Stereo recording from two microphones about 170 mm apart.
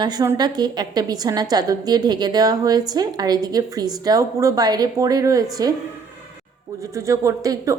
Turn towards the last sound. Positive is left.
turn(degrees=-20)  # may be behind; listen again after turning